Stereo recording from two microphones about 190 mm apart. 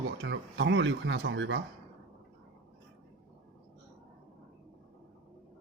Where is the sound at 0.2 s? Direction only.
70° right (ahead or behind).